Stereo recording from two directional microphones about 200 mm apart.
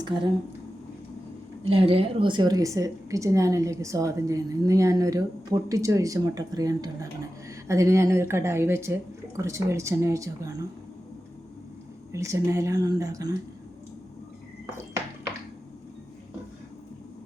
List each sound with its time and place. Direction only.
1.6 s a woman's voice: 30° right (ahead or behind)
12.1 s a woman's voice: 15° right (ahead or behind)